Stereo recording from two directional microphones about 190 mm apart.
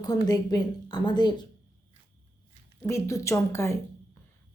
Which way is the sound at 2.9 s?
15° left (ahead or behind).